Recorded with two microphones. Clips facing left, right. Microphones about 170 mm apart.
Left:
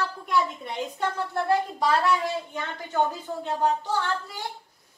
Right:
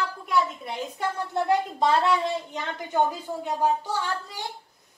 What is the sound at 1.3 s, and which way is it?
A woman's voice, 20° right (ahead or behind).